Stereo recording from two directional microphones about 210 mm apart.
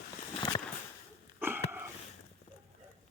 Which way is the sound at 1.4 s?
10° right (ahead or behind).